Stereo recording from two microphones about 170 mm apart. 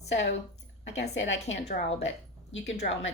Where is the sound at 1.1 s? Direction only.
90° left.